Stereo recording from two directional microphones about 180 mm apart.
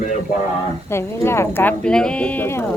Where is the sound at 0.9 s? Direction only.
15° left (ahead or behind).